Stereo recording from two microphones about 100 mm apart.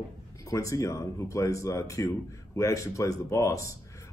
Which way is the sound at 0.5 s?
30° left (ahead or behind).